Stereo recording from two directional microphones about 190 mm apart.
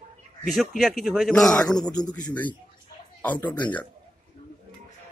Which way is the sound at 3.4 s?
25° left (ahead or behind).